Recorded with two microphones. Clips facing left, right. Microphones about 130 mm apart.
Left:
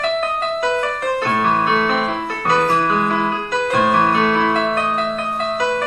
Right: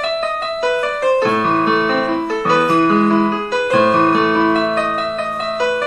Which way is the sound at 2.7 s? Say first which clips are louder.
Right 4 dB; 70° right (ahead or behind).